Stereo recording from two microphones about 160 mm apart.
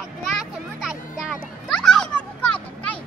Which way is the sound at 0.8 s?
Centre (ahead or behind).